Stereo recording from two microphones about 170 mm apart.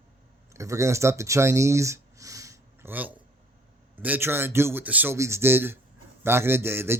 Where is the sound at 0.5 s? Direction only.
15° right (ahead or behind).